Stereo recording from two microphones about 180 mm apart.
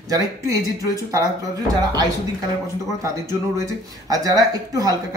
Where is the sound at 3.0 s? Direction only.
15° right (ahead or behind).